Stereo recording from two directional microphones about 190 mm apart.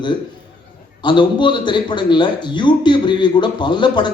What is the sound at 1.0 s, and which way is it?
A man's voice, 25° left (ahead or behind).